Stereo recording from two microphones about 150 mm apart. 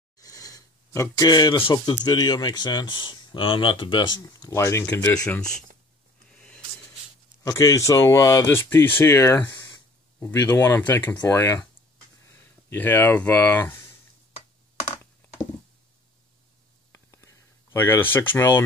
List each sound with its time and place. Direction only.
0.2 s speech: 25° left (ahead or behind)
6.3 s a sound: 5° left (ahead or behind)
7.4 s speech: 20° left (ahead or behind)
12.6 s speech: 10° left (ahead or behind)
16.9 s whispering: 20° left (ahead or behind)
17.7 s speech: 15° left (ahead or behind)